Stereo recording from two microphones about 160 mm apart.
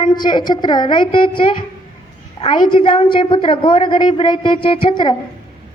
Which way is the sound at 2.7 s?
30° left (ahead or behind).